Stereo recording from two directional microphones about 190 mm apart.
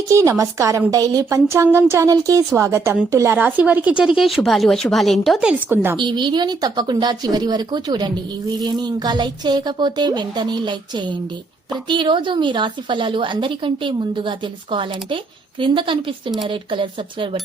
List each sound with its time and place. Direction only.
0.1 s a woman's voice: 15° right (ahead or behind)
6.0 s speech: 25° right (ahead or behind)